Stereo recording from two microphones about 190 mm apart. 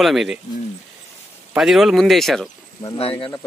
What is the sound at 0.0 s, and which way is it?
Speech, centre (ahead or behind).